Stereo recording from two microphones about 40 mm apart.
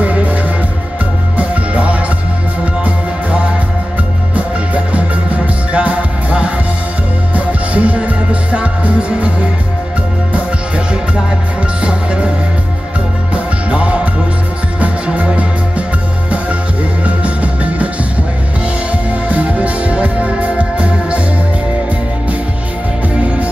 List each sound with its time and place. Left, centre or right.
0.0 s music: right
11.8 s music: right
13.3 s music: right
17.0 s music: right
19.2 s music: right